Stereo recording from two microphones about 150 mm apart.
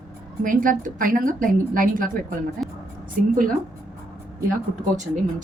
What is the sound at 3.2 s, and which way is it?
Speech, 65° right (ahead or behind).